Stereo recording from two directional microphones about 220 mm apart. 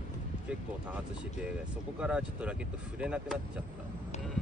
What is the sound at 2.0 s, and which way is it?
Speech, 5° right (ahead or behind).